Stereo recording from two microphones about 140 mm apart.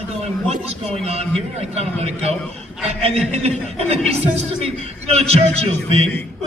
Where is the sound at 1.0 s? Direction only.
50° right (ahead or behind).